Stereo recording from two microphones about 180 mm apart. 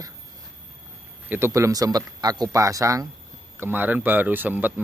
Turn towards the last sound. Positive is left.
turn(degrees=-10)  # may be behind; listen again after turning